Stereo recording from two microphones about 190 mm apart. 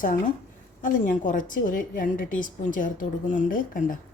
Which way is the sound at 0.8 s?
45° left (ahead or behind).